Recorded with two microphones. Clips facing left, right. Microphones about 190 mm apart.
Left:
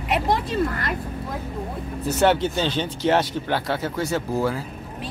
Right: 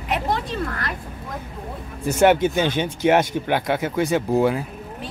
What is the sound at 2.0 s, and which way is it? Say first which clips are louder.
Speech: right 3 dB; 10° right (ahead or behind).